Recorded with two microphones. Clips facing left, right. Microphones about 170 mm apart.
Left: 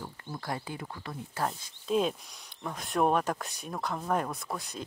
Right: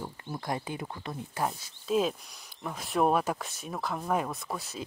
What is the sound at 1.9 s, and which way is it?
Speech, centre (ahead or behind).